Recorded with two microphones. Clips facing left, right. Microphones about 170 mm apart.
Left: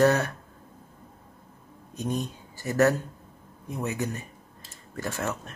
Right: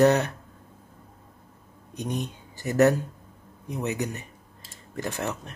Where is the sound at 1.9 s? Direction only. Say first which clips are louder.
Left 1 dB; 20° right (ahead or behind).